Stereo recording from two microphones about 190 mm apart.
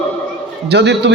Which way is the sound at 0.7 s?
65° right (ahead or behind).